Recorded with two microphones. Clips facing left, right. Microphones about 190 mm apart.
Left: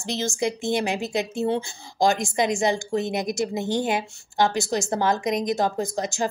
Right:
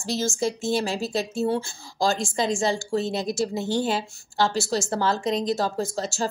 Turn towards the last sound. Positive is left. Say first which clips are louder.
# left 1 dB
turn(degrees=15)  # may be behind; listen again after turning